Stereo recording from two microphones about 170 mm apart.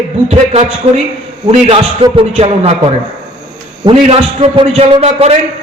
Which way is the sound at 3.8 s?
35° right (ahead or behind).